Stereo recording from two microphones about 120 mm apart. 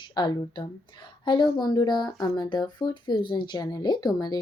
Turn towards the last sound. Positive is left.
turn(degrees=35)  # may be behind; listen again after turning